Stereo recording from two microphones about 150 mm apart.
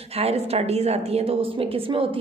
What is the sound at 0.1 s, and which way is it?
A woman's voice, 40° right (ahead or behind).